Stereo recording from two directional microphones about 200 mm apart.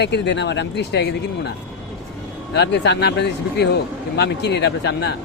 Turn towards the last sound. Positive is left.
turn(degrees=60)  # may be behind; listen again after turning